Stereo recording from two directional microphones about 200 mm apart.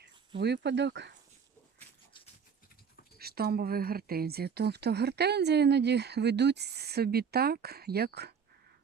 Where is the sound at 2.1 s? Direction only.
25° left (ahead or behind).